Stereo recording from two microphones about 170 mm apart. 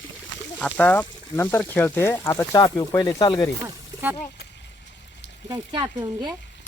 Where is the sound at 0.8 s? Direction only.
10° left (ahead or behind).